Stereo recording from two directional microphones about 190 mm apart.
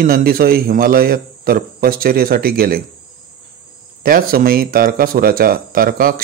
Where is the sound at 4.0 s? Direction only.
50° right (ahead or behind).